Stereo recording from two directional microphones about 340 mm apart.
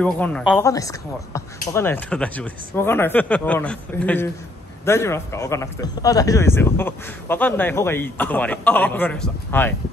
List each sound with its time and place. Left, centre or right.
0.0 s speech: centre